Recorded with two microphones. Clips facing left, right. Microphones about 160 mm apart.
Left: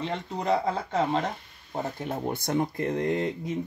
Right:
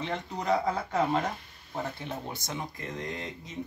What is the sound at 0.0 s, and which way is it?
Speech, 30° left (ahead or behind).